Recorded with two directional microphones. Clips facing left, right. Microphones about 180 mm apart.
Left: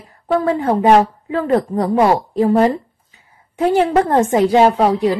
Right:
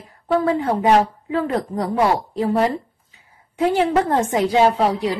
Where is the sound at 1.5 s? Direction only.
50° left (ahead or behind).